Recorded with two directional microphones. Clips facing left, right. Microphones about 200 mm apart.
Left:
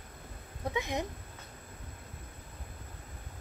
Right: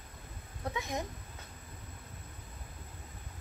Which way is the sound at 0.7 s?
20° left (ahead or behind).